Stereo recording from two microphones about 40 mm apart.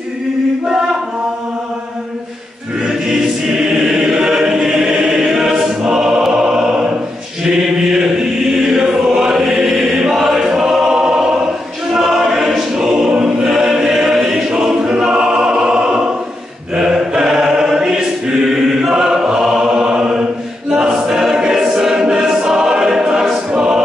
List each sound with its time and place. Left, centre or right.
3.1 s choir: centre
5.9 s music: centre
7.9 s chant: centre
8.7 s choir: centre